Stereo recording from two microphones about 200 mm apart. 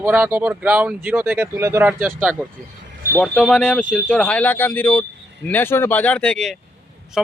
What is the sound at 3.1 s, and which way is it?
Speech, 5° left (ahead or behind).